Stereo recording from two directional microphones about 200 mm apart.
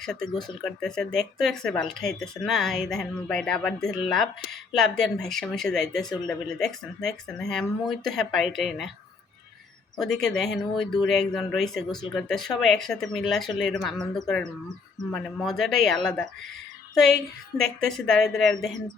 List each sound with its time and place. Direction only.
0.0 s speech: 5° left (ahead or behind)
10.0 s speech: centre (ahead or behind)